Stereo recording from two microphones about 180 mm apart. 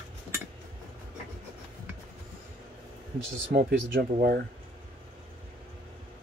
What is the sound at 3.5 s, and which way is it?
Speech, 60° right (ahead or behind).